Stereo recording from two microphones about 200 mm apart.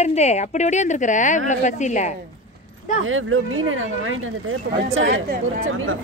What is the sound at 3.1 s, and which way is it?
Speech, 90° right.